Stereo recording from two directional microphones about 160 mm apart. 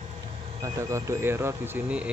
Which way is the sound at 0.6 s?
15° right (ahead or behind).